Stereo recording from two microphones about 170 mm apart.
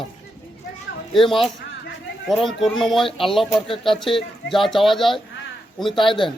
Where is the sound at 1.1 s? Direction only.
30° left (ahead or behind).